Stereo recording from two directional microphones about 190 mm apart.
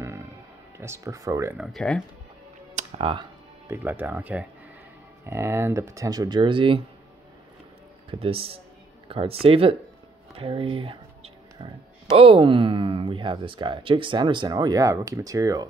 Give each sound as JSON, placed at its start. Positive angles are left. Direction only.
{"t": 0.7, "sound": "speech", "side_deg": -15}
{"t": 1.6, "sound": "speech", "side_deg": 0}
{"t": 2.7, "sound": "music", "side_deg": -30}
{"t": 3.6, "sound": "speech", "side_deg": -10}
{"t": 8.1, "sound": "speech", "side_deg": -30}
{"t": 10.3, "sound": "a sound", "side_deg": -30}
{"t": 12.2, "sound": "speech", "side_deg": -25}